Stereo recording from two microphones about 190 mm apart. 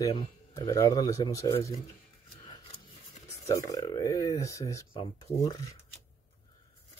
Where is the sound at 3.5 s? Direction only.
20° left (ahead or behind).